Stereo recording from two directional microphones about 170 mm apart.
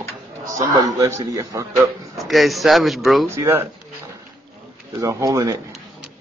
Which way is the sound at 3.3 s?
15° right (ahead or behind).